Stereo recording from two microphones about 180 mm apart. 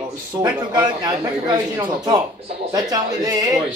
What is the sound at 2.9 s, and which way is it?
Speech, 20° right (ahead or behind).